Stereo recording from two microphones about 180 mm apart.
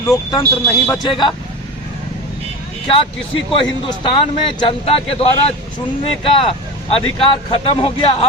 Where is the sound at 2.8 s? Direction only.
30° left (ahead or behind).